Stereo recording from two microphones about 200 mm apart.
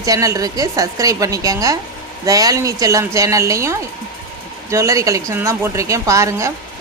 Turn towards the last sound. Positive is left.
turn(degrees=-15)  # may be behind; listen again after turning